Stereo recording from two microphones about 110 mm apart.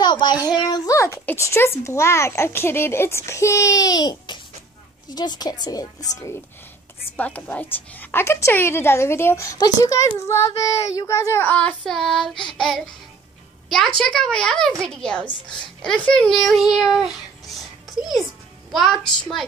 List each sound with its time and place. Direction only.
0.0 s a woman's voice: 40° left (ahead or behind)
7.2 s speech: 15° left (ahead or behind)
11.4 s a sound: 15° left (ahead or behind)
11.8 s a woman's voice: 5° left (ahead or behind)